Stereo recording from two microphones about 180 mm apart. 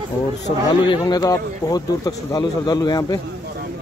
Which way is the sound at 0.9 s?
25° left (ahead or behind).